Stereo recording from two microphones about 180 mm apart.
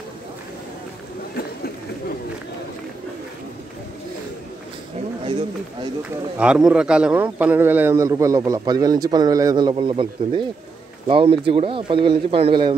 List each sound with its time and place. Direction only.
6.3 s a man's voice: 5° right (ahead or behind); by 12.7 s 30° right (ahead or behind)